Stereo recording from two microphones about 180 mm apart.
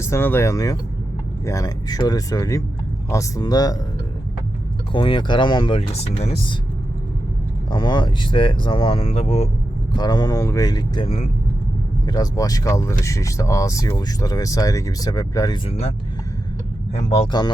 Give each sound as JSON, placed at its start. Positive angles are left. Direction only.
{"t": 0.0, "sound": "speech", "side_deg": 15}
{"t": 4.9, "sound": "speech", "side_deg": 30}
{"t": 7.7, "sound": "speech", "side_deg": 25}
{"t": 9.9, "sound": "speech", "side_deg": 20}
{"t": 12.0, "sound": "speech", "side_deg": 20}
{"t": 16.9, "sound": "speech", "side_deg": 35}